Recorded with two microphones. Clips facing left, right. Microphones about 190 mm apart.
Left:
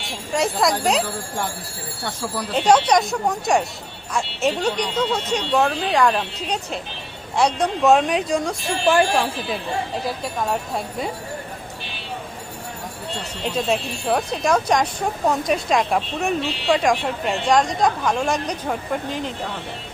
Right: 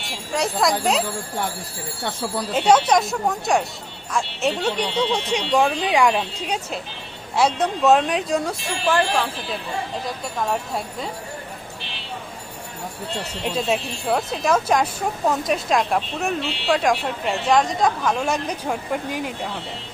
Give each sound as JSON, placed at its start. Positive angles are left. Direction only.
{"t": 0.0, "sound": "speech", "side_deg": 0}
{"t": 2.5, "sound": "speech", "side_deg": -5}
{"t": 8.9, "sound": "speech", "side_deg": 10}
{"t": 10.2, "sound": "speech", "side_deg": 0}
{"t": 13.4, "sound": "speech", "side_deg": -5}